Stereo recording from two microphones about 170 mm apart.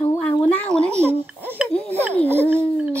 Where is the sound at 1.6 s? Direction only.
10° left (ahead or behind).